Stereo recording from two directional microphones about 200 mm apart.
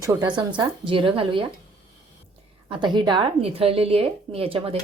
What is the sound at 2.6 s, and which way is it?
A woman's voice, 20° right (ahead or behind).